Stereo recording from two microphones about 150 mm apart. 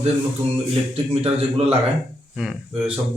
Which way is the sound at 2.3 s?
5° right (ahead or behind).